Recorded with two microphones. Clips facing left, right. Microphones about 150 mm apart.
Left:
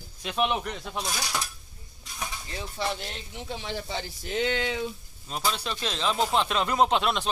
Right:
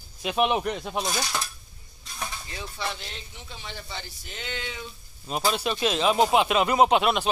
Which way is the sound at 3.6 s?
90° left.